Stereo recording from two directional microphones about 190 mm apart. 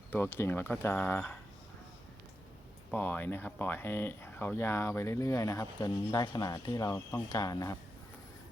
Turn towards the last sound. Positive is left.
turn(degrees=20)  # may be behind; listen again after turning